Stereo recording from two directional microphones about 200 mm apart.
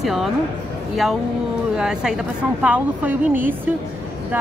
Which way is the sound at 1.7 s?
5° right (ahead or behind).